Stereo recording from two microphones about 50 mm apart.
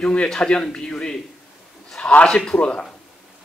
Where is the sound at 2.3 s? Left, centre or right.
Centre.